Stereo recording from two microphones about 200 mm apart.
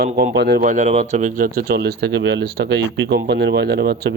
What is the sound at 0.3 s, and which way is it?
Speech, 55° right (ahead or behind).